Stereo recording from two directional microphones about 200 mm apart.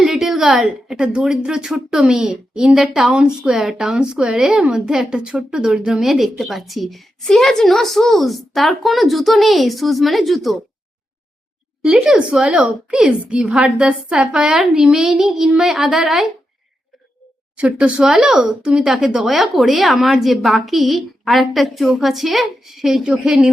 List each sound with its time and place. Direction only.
0.0 s a woman's voice: centre (ahead or behind)
11.8 s a woman's voice: centre (ahead or behind)
17.6 s a woman's voice: 5° right (ahead or behind)